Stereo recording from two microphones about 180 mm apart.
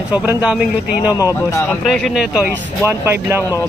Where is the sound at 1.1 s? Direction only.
20° left (ahead or behind).